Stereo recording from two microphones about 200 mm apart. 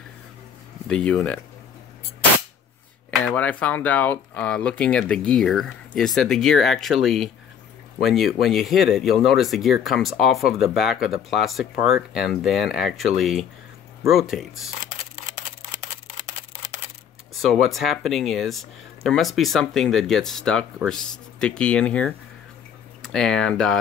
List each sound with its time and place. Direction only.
0.8 s speech: 5° left (ahead or behind)
3.3 s speech: 5° left (ahead or behind)
17.3 s speech: centre (ahead or behind)